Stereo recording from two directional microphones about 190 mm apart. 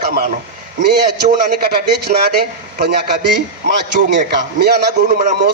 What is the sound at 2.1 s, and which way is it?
Speech, 45° right (ahead or behind).